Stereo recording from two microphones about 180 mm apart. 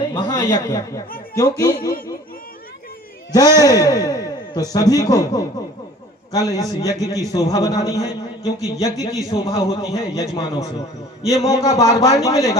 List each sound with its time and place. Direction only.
0.1 s a man's voice: 20° left (ahead or behind)
3.3 s a man's voice: 20° left (ahead or behind)